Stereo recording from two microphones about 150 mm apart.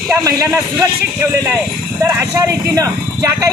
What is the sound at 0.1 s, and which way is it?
Speech, 15° right (ahead or behind).